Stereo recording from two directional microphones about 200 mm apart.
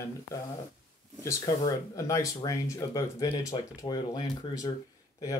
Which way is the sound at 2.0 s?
15° left (ahead or behind).